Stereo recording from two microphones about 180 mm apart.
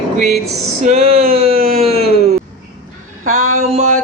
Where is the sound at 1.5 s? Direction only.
55° right (ahead or behind).